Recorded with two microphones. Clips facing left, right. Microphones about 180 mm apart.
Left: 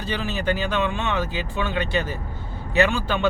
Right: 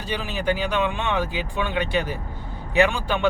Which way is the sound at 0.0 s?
15° right (ahead or behind).